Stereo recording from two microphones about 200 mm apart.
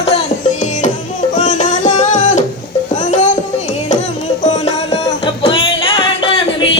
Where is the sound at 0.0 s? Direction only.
35° left (ahead or behind).